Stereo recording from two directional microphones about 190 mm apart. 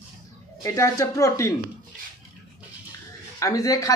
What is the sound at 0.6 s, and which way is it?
Speech, 15° left (ahead or behind).